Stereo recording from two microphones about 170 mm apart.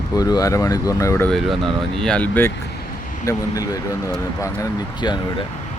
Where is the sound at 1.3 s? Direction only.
Centre (ahead or behind).